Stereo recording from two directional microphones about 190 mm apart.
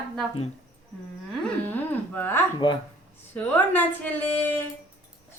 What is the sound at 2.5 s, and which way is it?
Speech, 25° left (ahead or behind).